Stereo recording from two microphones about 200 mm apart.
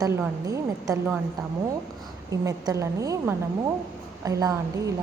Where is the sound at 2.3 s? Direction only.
15° right (ahead or behind).